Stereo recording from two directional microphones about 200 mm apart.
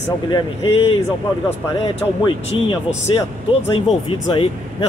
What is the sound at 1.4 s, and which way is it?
Speech, 25° left (ahead or behind).